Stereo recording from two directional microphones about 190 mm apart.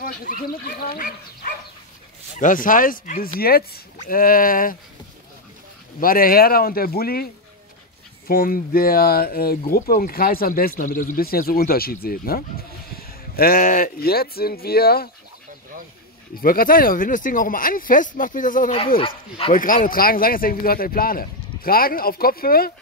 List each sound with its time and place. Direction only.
0.0 s speech: 50° left (ahead or behind)
5.9 s speech: 50° left (ahead or behind)
8.3 s speech: 50° left (ahead or behind)
16.3 s speech: 50° left (ahead or behind)
18.9 s speech: 30° left (ahead or behind)
19.5 s speech: 45° left (ahead or behind)